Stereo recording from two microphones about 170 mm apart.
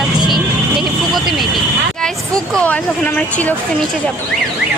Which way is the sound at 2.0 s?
5° left (ahead or behind).